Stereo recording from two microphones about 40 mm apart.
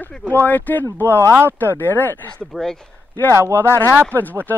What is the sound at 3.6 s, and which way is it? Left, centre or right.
Speech, left.